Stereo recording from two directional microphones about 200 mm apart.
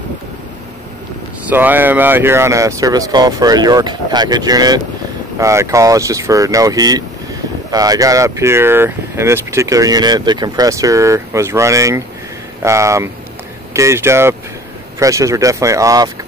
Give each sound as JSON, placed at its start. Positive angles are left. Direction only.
{"t": 1.5, "sound": "speech", "side_deg": -10}